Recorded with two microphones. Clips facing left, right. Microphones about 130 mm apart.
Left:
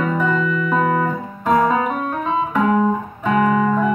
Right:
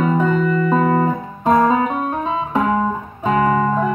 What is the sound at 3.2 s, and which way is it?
Music, 35° right (ahead or behind).